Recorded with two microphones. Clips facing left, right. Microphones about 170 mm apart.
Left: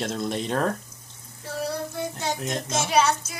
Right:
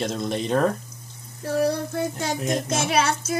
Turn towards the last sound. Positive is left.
turn(degrees=-50)  # may be behind; listen again after turning